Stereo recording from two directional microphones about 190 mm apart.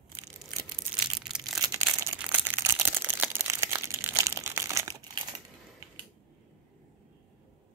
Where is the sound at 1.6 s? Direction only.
20° right (ahead or behind).